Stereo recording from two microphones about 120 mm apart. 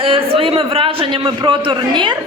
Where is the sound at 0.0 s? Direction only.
50° right (ahead or behind).